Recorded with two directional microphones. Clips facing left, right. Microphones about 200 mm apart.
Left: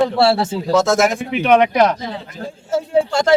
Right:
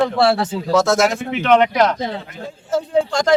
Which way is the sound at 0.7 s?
Centre (ahead or behind).